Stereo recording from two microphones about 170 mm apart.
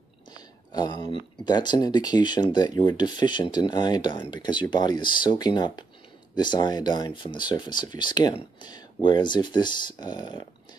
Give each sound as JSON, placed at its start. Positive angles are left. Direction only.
{"t": 0.3, "sound": "speech", "side_deg": 25}